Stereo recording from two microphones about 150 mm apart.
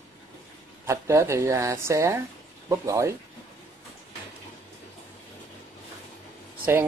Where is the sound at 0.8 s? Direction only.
20° right (ahead or behind).